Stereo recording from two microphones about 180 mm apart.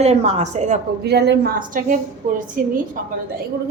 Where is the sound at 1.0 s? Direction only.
65° right (ahead or behind); by 2.7 s 50° right (ahead or behind).